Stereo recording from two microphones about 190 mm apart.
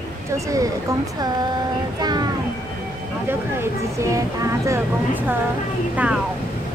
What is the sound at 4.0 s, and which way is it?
Speech, 15° right (ahead or behind).